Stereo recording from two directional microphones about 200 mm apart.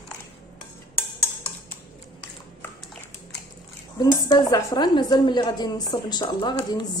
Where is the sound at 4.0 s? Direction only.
20° left (ahead or behind).